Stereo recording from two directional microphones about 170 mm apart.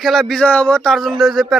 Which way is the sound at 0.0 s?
Centre (ahead or behind).